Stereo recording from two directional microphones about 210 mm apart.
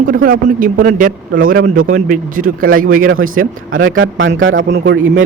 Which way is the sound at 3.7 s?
70° right (ahead or behind).